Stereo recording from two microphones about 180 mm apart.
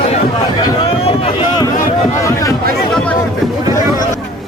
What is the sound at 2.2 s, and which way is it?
Speech, 15° left (ahead or behind).